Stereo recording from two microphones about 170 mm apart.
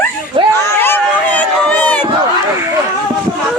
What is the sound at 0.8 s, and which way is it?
Run, 10° left (ahead or behind).